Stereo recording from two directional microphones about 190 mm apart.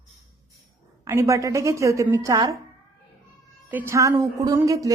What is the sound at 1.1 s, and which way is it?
A woman's voice, 15° right (ahead or behind).